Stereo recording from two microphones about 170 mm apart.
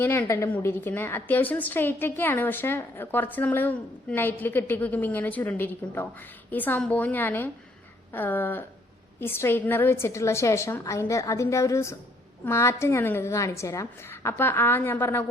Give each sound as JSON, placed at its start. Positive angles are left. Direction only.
{"t": 0.0, "sound": "a woman's voice", "side_deg": 15}